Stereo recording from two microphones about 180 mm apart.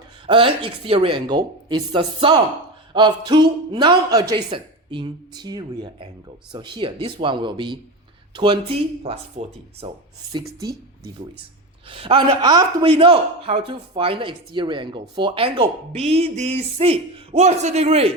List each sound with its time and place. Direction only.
0.3 s a man's voice: 30° right (ahead or behind)
11.9 s a man's voice: 30° right (ahead or behind)